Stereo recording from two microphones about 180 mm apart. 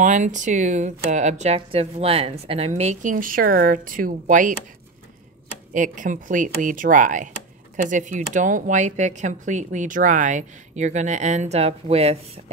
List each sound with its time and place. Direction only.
0.0 s speech: 45° right (ahead or behind)
5.7 s speech: 45° right (ahead or behind)